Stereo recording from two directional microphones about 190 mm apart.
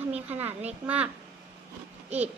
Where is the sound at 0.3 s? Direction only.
10° right (ahead or behind).